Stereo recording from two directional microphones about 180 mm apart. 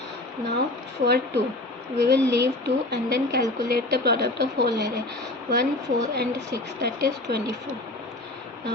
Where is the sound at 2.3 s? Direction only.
65° right (ahead or behind).